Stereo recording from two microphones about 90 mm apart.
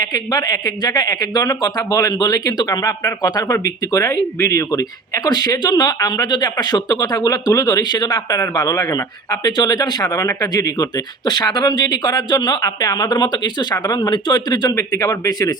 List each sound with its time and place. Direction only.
0.0 s speech: 50° left (ahead or behind)
10.1 s speech: 35° left (ahead or behind)